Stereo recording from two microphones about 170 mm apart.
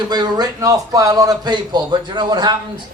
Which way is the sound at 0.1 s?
25° right (ahead or behind).